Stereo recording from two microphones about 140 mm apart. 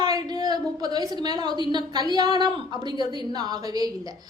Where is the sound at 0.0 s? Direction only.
30° right (ahead or behind).